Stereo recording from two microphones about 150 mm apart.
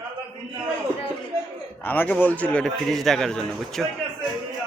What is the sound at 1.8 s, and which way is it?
Speech, 10° left (ahead or behind).